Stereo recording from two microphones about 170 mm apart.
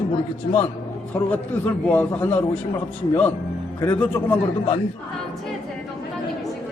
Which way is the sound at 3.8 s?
10° left (ahead or behind).